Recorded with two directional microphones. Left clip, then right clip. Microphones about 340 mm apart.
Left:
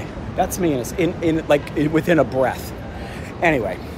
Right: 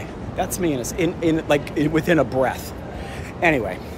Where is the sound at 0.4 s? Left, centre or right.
Centre.